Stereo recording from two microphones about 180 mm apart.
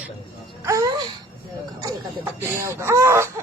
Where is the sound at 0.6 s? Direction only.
20° right (ahead or behind).